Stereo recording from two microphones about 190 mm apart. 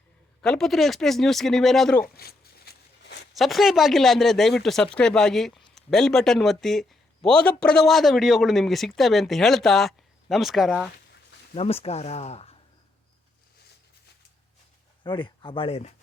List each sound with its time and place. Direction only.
0.4 s a man's voice: 5° left (ahead or behind)
2.1 s a sound: 55° left (ahead or behind)
3.3 s a man's voice: centre (ahead or behind)
11.5 s speech: 30° left (ahead or behind)
15.0 s speech: 25° left (ahead or behind)